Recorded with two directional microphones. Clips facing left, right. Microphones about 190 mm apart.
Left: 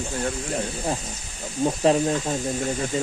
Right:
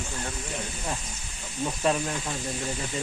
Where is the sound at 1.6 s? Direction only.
30° left (ahead or behind).